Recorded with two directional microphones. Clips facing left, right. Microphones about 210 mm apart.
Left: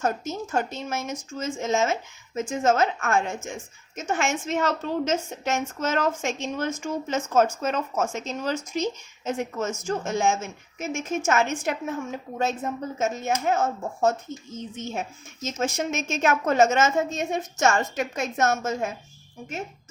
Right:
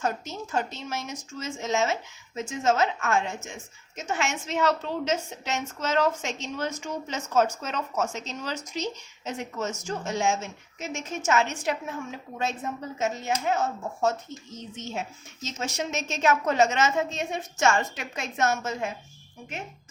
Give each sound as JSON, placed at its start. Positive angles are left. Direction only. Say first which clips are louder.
{"t": 0.0, "sound": "a woman's voice", "louder": "left 3 dB", "side_deg": 50}
{"t": 13.0, "sound": "a woman's voice", "louder": "left 2 dB", "side_deg": 50}